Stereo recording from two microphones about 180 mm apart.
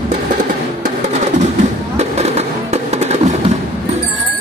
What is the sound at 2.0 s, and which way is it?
Fireworks, 35° right (ahead or behind).